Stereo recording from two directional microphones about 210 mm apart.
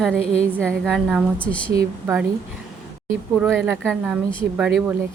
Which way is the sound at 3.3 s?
Centre (ahead or behind).